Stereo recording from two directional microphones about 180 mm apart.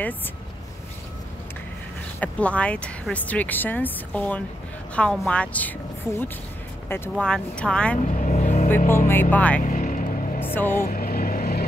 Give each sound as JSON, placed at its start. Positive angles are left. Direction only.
{"t": 2.1, "sound": "speech", "side_deg": 10}
{"t": 8.0, "sound": "vehicle", "side_deg": 45}
{"t": 9.0, "sound": "speech", "side_deg": 10}
{"t": 9.6, "sound": "vehicle", "side_deg": 45}
{"t": 10.4, "sound": "speech", "side_deg": 10}
{"t": 10.7, "sound": "vehicle", "side_deg": 50}